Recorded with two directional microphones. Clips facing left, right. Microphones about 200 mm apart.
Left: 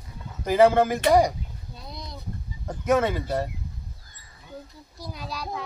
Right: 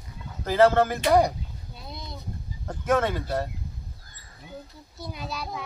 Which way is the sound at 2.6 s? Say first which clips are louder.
Left 2 dB; 10° left (ahead or behind).